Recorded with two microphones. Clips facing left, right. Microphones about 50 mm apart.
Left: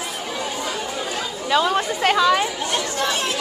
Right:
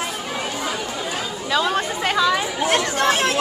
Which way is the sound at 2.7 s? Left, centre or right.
Right.